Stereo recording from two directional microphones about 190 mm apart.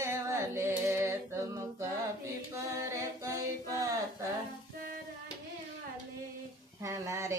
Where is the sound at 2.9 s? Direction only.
15° right (ahead or behind).